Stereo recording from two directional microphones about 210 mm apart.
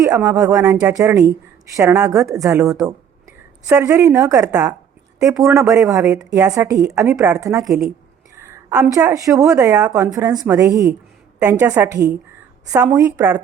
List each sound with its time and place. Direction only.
0.3 s a woman's voice: 15° right (ahead or behind)